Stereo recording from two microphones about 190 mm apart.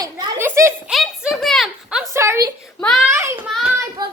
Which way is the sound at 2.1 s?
15° right (ahead or behind).